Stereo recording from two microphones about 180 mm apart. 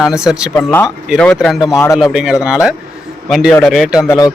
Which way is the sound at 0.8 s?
Centre (ahead or behind).